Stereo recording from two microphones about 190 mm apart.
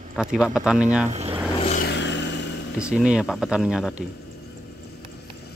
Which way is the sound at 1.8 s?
70° left (ahead or behind).